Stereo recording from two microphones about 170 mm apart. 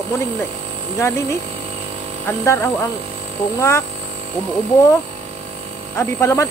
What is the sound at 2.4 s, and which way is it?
Speech, 15° left (ahead or behind).